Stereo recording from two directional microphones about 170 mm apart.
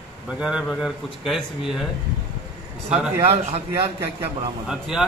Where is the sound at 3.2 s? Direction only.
35° right (ahead or behind).